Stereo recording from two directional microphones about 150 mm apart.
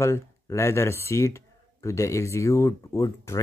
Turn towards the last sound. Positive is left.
turn(degrees=20)  # may be behind; listen again after turning